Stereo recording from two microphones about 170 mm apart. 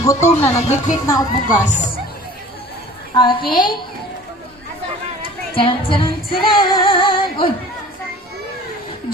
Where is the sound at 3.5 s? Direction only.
25° left (ahead or behind).